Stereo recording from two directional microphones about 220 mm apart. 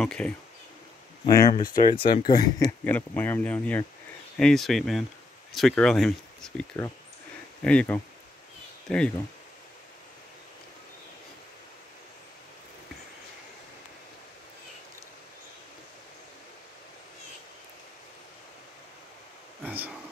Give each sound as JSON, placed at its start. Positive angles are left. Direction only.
{"t": 0.0, "sound": "speech", "side_deg": 5}
{"t": 1.2, "sound": "speech", "side_deg": 15}
{"t": 2.8, "sound": "speech", "side_deg": 10}
{"t": 7.6, "sound": "speech", "side_deg": 5}